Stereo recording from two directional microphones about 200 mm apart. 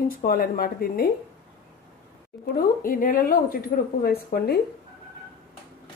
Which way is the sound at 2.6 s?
45° left (ahead or behind).